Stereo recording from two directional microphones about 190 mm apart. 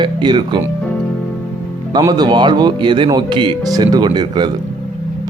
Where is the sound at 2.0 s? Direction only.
20° right (ahead or behind).